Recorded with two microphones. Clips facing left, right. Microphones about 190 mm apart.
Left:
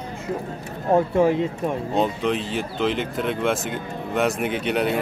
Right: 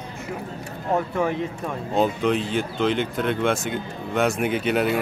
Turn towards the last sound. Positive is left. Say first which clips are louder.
# right 1 dB
turn(degrees=0)  # may be behind; listen again after turning